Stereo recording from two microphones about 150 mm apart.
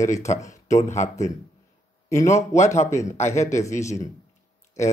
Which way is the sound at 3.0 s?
50° left (ahead or behind).